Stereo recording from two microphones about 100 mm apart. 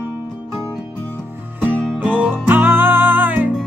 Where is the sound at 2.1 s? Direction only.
20° right (ahead or behind).